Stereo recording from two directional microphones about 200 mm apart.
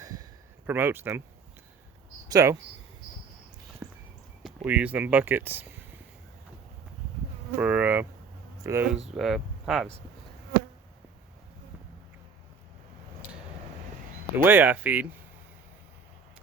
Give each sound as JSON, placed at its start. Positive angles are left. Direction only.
{"t": 0.0, "sound": "a sound", "side_deg": -15}
{"t": 0.7, "sound": "speech", "side_deg": -10}
{"t": 2.3, "sound": "speech", "side_deg": -15}
{"t": 3.8, "sound": "walk", "side_deg": -5}
{"t": 4.4, "sound": "speech", "side_deg": -5}
{"t": 7.5, "sound": "speech", "side_deg": -10}
{"t": 14.3, "sound": "speech", "side_deg": -10}